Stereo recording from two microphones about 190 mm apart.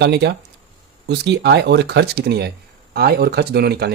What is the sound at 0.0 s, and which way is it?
Speech, 65° right (ahead or behind).